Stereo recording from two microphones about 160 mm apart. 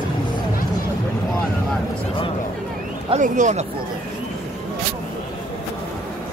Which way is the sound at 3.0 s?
50° right (ahead or behind).